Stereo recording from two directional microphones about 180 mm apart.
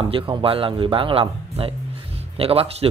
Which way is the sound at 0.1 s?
30° right (ahead or behind).